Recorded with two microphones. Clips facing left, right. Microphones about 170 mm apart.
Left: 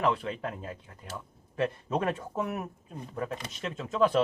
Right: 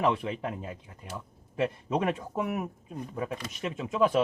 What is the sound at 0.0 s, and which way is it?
Speech, 20° right (ahead or behind).